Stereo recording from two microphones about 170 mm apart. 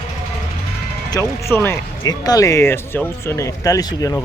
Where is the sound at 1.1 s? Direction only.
15° left (ahead or behind).